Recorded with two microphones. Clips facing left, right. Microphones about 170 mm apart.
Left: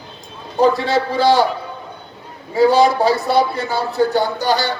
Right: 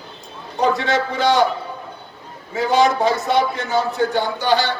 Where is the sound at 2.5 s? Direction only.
35° left (ahead or behind).